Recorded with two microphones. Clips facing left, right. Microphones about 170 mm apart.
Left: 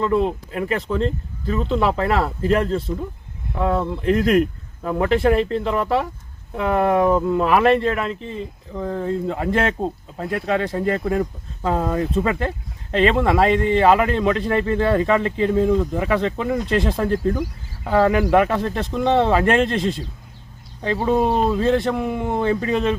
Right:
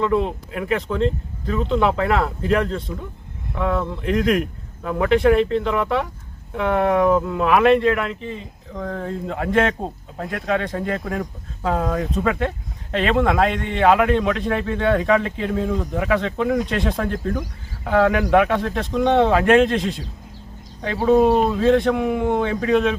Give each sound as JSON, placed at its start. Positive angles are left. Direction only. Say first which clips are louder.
{"t": 0.0, "sound": "speech", "louder": "left 1 dB", "side_deg": 0}
{"t": 3.6, "sound": "speech", "louder": "left 1 dB", "side_deg": 35}
{"t": 5.0, "sound": "speech", "louder": "right 2 dB", "side_deg": 0}